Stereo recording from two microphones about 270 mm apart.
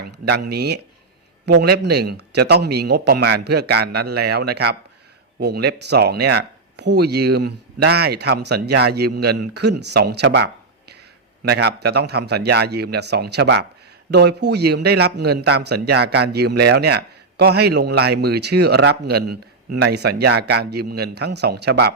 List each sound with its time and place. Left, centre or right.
0.3 s speech: right